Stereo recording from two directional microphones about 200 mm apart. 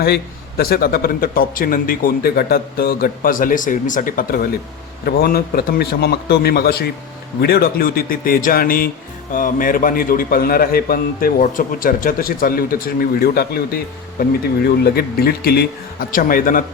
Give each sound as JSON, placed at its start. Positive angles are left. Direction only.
{"t": 0.0, "sound": "speech", "side_deg": 50}